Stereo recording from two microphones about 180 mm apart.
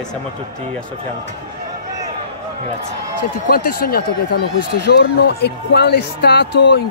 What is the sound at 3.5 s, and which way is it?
Speech, 55° left (ahead or behind).